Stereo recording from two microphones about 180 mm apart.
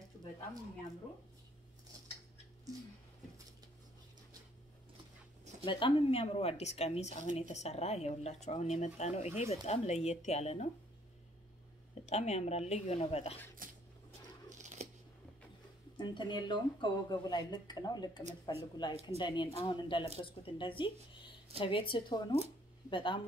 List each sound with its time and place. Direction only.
5.7 s speech: 25° left (ahead or behind)
12.1 s speech: 35° left (ahead or behind)
13.6 s a sound: 50° right (ahead or behind)
14.5 s tearing: 40° right (ahead or behind)
16.0 s speech: 25° left (ahead or behind)